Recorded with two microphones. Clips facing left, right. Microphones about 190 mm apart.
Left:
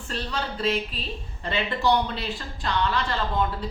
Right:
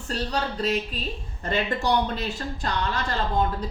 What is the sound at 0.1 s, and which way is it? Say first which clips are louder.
A woman's voice: right 3 dB; 40° right (ahead or behind).